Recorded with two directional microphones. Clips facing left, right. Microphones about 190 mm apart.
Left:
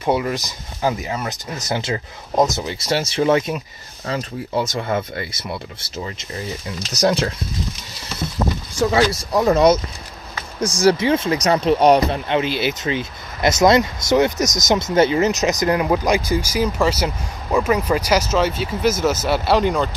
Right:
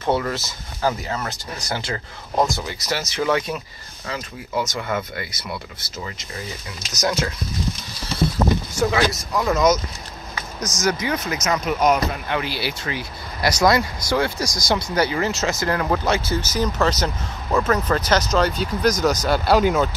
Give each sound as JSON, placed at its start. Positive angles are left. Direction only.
{"t": 0.0, "sound": "speech", "side_deg": 15}
{"t": 6.9, "sound": "speech", "side_deg": 30}
{"t": 8.9, "sound": "speech", "side_deg": 35}